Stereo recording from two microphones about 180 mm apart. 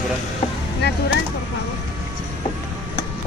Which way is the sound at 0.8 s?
70° left (ahead or behind).